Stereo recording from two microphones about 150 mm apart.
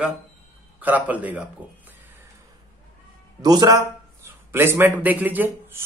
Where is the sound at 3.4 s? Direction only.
25° right (ahead or behind).